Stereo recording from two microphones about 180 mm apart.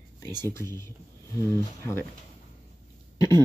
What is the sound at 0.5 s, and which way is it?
Speech, 15° left (ahead or behind).